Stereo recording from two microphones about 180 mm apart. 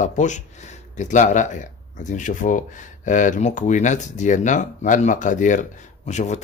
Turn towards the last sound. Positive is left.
turn(degrees=40)  # may be behind; listen again after turning